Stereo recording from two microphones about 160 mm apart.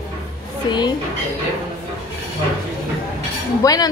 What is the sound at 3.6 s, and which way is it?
Speech, 25° left (ahead or behind).